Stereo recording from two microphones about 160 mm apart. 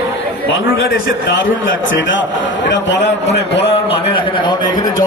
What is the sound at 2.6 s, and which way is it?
A man's voice, 90° left.